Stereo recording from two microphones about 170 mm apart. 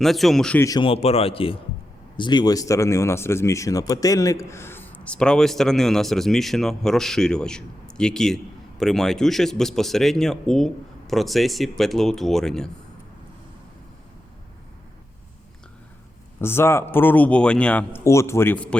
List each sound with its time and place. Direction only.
0.0 s speech: centre (ahead or behind)
0.6 s speech: 20° left (ahead or behind)
0.9 s speech: 35° left (ahead or behind); by 12.7 s 5° left (ahead or behind)
16.4 s speech: 15° left (ahead or behind)